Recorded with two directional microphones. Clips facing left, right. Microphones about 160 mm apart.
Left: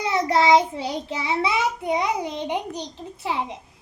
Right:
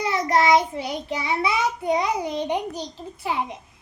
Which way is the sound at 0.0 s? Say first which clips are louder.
Even; 25° left (ahead or behind).